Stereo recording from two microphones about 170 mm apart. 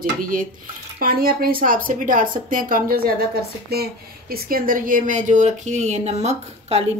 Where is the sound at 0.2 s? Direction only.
55° right (ahead or behind).